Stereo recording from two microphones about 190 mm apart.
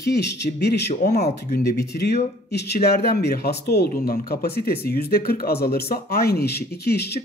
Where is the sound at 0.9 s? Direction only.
50° left (ahead or behind).